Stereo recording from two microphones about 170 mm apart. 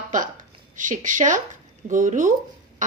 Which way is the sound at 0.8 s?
50° right (ahead or behind).